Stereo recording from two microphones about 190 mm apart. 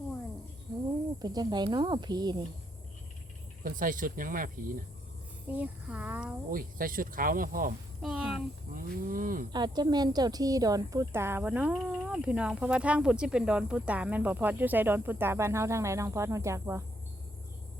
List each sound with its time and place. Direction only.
1.2 s speech: 20° right (ahead or behind)
3.6 s speech: 45° right (ahead or behind)
5.5 s a woman's voice: 10° right (ahead or behind)
6.5 s speech: 50° right (ahead or behind)
8.0 s speech: 5° right (ahead or behind)
8.7 s speech: 45° right (ahead or behind)
9.5 s a woman's voice: 20° right (ahead or behind)